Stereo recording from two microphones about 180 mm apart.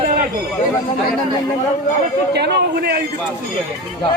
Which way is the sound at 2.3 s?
70° right (ahead or behind).